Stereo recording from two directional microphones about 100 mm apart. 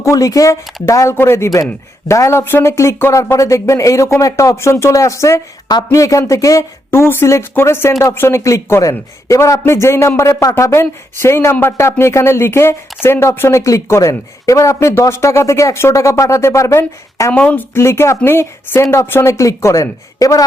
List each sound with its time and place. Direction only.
0.0 s speech: 35° left (ahead or behind)
17.3 s speech: 15° left (ahead or behind); by 20.4 s 35° left (ahead or behind)